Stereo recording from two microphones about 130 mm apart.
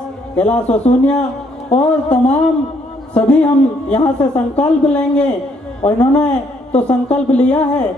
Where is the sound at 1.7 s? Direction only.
60° left (ahead or behind).